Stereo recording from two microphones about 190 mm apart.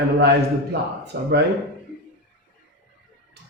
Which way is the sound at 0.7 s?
60° right (ahead or behind).